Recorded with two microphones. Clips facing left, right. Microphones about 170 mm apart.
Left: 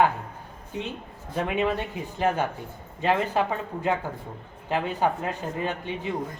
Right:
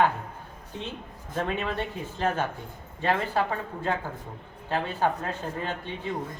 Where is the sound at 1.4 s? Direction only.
15° left (ahead or behind).